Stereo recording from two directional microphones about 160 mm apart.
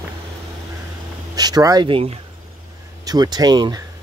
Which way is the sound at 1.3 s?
25° right (ahead or behind).